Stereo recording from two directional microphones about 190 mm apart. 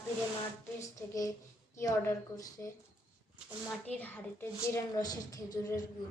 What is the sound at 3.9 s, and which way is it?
A woman's voice, 5° left (ahead or behind).